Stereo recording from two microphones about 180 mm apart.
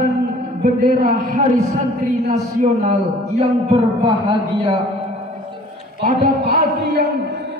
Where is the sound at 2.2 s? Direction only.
40° right (ahead or behind).